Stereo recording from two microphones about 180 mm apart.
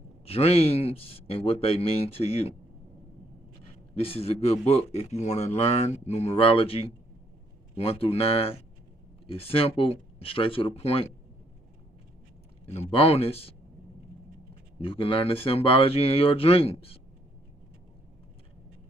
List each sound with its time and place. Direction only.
0.2 s a man's voice: 35° left (ahead or behind)
3.9 s a man's voice: 35° left (ahead or behind)
12.6 s a man's voice: 35° left (ahead or behind)
14.8 s a man's voice: 30° left (ahead or behind)